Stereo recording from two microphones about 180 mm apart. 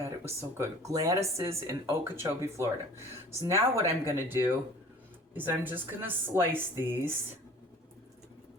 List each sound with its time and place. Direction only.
0.0 s speech: 15° right (ahead or behind)